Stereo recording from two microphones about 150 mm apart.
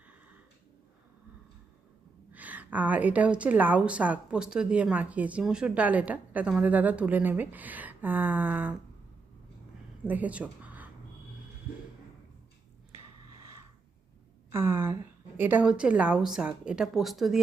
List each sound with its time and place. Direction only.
2.3 s a woman's voice: 10° right (ahead or behind)
10.0 s speech: 10° right (ahead or behind)
14.5 s a woman's voice: 15° right (ahead or behind); by 17.4 s centre (ahead or behind)